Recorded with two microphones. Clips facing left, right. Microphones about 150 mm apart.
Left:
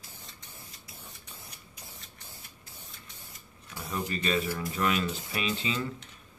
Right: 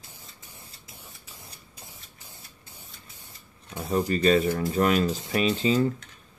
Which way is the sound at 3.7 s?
35° right (ahead or behind).